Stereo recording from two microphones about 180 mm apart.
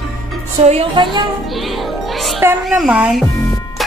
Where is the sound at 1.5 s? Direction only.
Centre (ahead or behind).